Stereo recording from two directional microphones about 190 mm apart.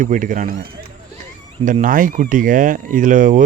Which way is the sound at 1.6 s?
45° right (ahead or behind).